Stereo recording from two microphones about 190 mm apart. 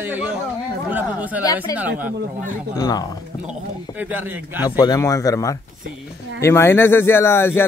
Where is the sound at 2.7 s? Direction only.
20° left (ahead or behind).